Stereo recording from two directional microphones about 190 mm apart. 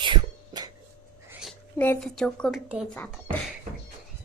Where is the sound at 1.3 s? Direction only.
5° right (ahead or behind).